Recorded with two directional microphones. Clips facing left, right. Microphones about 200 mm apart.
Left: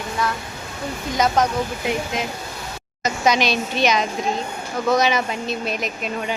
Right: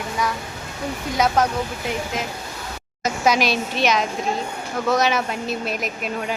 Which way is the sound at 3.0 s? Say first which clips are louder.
Even; 5° right (ahead or behind).